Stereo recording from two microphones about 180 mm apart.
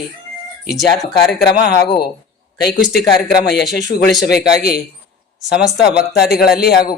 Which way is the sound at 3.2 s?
60° left (ahead or behind).